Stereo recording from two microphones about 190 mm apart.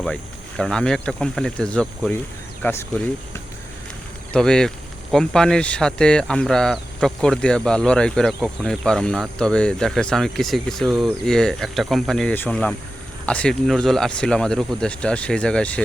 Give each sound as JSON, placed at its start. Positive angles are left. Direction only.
{"t": 0.0, "sound": "speech", "side_deg": 5}